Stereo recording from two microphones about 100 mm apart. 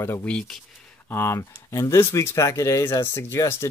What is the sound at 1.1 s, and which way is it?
Speech, 25° left (ahead or behind).